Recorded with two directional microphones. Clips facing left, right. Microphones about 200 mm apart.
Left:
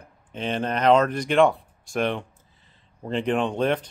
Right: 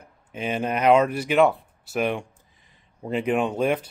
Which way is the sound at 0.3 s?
10° right (ahead or behind).